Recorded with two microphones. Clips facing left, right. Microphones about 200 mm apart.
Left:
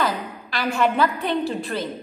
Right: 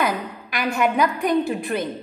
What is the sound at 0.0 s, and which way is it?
A woman's voice, 15° right (ahead or behind).